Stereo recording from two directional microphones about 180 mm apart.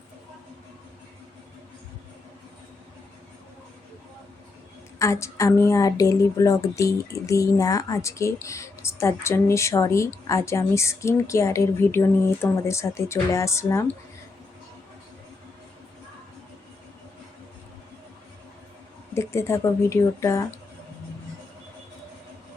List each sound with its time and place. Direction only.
4.9 s a woman's voice: 15° left (ahead or behind)
19.1 s a woman's voice: 15° left (ahead or behind)